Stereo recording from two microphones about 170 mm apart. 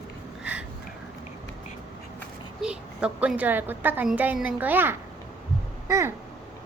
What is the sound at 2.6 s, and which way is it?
A woman's voice, 5° right (ahead or behind).